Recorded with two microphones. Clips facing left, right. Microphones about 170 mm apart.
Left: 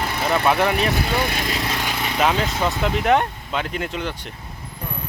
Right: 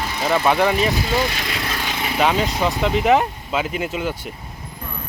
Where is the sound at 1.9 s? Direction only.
5° right (ahead or behind).